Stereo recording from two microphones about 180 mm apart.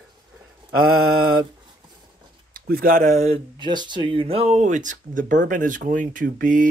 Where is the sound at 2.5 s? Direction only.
50° right (ahead or behind).